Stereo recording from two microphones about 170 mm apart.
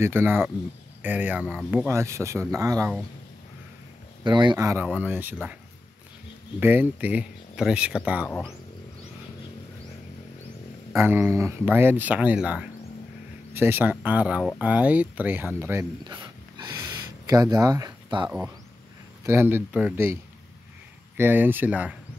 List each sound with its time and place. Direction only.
0.0 s speech: 15° right (ahead or behind)
4.2 s speech: 25° right (ahead or behind); by 5.6 s 10° right (ahead or behind)
6.6 s speech: 10° right (ahead or behind)
11.0 s speech: 15° right (ahead or behind)
16.0 s a sound: 25° right (ahead or behind)
17.3 s speech: 20° right (ahead or behind)
21.2 s speech: 10° right (ahead or behind)